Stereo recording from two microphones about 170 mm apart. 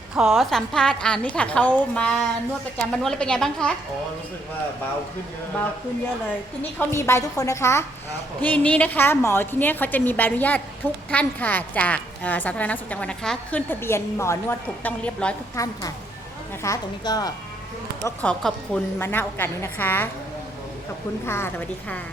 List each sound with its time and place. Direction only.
0.2 s a woman's voice: centre (ahead or behind)
6.6 s a woman's voice: 15° left (ahead or behind)
15.5 s a woman's voice: 20° left (ahead or behind)
18.0 s a woman's voice: 10° left (ahead or behind)
21.2 s a woman's voice: 15° left (ahead or behind)